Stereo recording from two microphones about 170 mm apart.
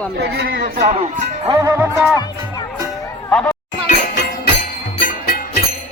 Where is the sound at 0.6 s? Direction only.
50° right (ahead or behind).